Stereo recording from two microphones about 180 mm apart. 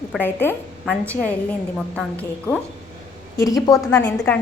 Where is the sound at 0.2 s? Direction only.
10° left (ahead or behind).